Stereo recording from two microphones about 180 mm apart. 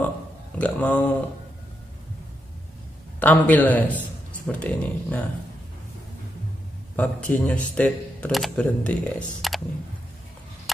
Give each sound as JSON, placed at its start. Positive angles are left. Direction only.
{"t": 0.6, "sound": "speech", "side_deg": 10}
{"t": 3.2, "sound": "a man's voice", "side_deg": 10}
{"t": 7.0, "sound": "speech", "side_deg": 5}